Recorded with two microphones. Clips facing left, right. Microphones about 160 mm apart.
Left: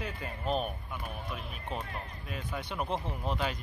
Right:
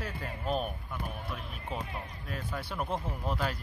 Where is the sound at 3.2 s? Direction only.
15° left (ahead or behind).